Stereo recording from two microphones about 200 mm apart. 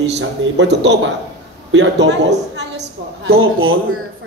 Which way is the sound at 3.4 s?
90° right.